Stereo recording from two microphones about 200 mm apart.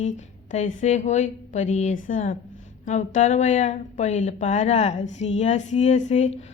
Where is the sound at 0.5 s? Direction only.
35° left (ahead or behind).